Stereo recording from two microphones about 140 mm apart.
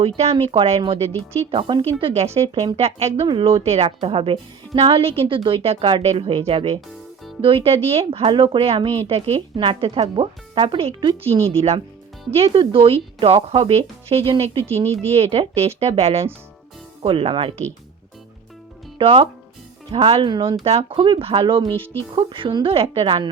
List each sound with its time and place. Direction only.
0.2 s a woman's voice: 50° right (ahead or behind)
18.9 s a woman's voice: 40° right (ahead or behind)